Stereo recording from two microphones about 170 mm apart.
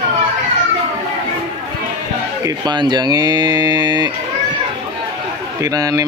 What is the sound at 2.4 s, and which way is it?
Speech, 25° right (ahead or behind).